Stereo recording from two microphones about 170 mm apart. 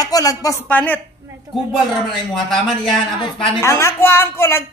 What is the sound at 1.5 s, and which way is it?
A woman's voice, centre (ahead or behind).